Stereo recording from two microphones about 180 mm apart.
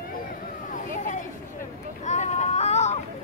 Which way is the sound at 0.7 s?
45° left (ahead or behind).